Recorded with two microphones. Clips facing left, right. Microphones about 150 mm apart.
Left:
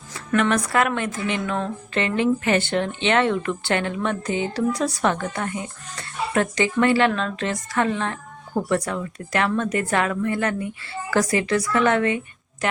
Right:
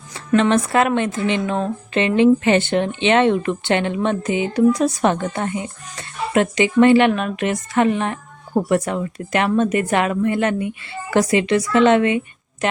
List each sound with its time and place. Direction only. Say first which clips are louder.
0.3 s a woman's voice: right 5 dB; 25° right (ahead or behind)